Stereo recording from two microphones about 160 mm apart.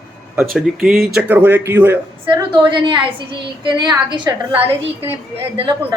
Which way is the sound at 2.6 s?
30° right (ahead or behind).